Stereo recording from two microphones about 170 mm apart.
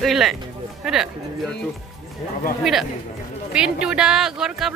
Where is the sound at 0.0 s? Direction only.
Centre (ahead or behind).